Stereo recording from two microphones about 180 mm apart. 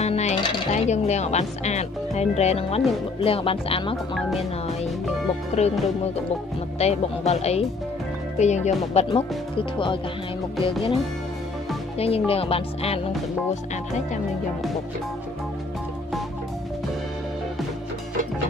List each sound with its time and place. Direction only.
0.0 s speech: 35° left (ahead or behind)
5.5 s speech: 35° left (ahead or behind)
6.8 s speech: 35° left (ahead or behind)
12.0 s speech: 30° left (ahead or behind)